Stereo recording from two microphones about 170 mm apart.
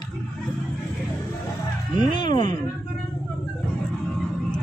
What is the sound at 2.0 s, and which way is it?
Speech, 25° left (ahead or behind).